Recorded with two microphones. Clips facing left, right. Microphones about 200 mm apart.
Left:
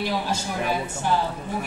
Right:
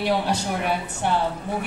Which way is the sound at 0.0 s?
70° right (ahead or behind).